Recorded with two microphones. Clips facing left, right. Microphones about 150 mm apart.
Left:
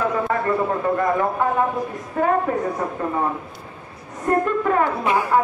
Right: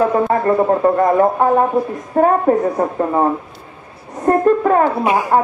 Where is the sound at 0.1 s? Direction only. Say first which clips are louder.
Right 6 dB; 40° right (ahead or behind).